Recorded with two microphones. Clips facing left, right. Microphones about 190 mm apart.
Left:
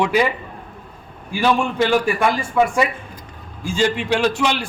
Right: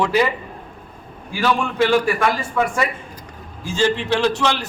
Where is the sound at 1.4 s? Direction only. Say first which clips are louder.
Left 1 dB; 15° left (ahead or behind).